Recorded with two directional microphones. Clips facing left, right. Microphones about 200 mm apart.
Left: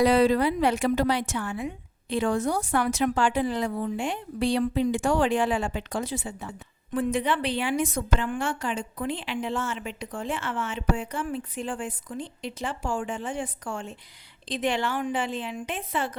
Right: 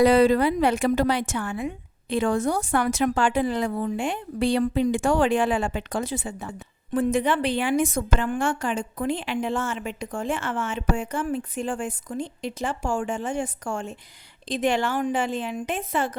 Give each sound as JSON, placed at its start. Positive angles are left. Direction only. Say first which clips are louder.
{"t": 0.0, "sound": "a woman's voice", "louder": "right 3 dB", "side_deg": -50}